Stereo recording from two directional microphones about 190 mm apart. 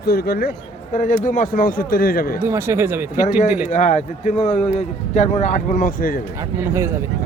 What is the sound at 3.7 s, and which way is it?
Speech, 40° left (ahead or behind).